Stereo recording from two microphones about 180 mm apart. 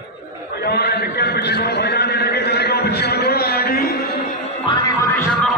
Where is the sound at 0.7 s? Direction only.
60° left (ahead or behind).